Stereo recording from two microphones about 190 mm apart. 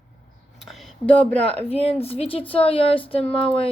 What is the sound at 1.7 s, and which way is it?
A woman's voice, 30° left (ahead or behind).